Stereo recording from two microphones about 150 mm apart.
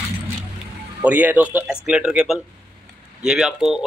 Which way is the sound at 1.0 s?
10° right (ahead or behind).